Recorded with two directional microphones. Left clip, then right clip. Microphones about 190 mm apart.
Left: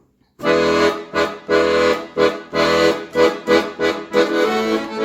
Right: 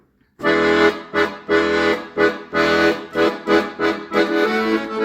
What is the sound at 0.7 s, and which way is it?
Accordion, 5° left (ahead or behind).